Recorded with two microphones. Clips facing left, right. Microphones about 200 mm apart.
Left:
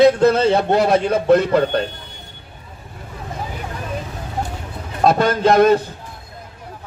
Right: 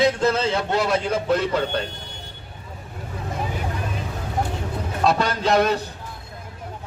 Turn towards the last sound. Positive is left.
turn(degrees=50)  # may be behind; listen again after turning